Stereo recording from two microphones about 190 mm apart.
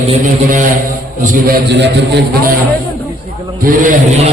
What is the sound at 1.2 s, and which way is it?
A man's voice, 45° right (ahead or behind).